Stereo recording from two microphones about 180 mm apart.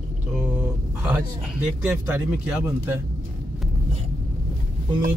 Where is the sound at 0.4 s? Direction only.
10° right (ahead or behind).